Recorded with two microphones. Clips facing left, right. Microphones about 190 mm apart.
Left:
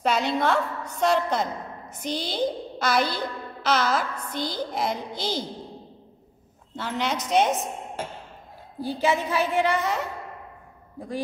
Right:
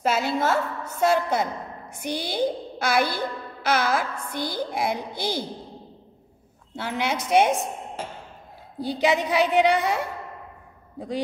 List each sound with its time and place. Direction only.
0.0 s a woman's voice: 5° right (ahead or behind)
6.7 s a woman's voice: 10° right (ahead or behind)
8.7 s a woman's voice: 15° right (ahead or behind)